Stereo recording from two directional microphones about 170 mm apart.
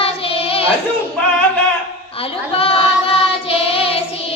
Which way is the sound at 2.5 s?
35° left (ahead or behind).